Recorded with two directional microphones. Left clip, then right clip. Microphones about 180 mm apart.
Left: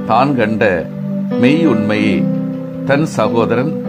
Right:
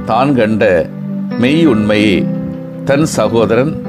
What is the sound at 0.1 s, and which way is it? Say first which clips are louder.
Speech: right 1 dB; 20° right (ahead or behind).